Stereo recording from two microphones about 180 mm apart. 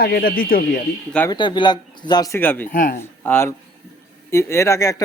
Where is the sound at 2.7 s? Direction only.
50° left (ahead or behind).